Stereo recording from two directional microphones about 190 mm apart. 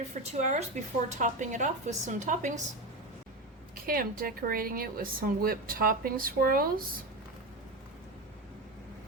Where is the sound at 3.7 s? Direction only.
50° right (ahead or behind).